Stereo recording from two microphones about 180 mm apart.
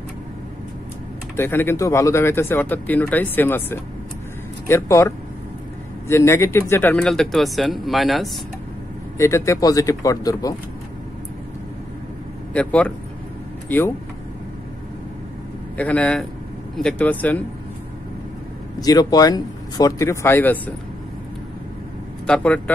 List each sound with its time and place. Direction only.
1.3 s speech: 10° left (ahead or behind)
9.2 s speech: 15° left (ahead or behind)
12.5 s speech: 5° left (ahead or behind)
15.8 s speech: 5° left (ahead or behind)
18.8 s speech: 20° left (ahead or behind)
22.2 s speech: 5° left (ahead or behind)